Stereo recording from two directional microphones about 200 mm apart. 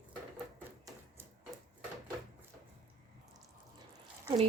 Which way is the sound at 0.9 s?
10° right (ahead or behind).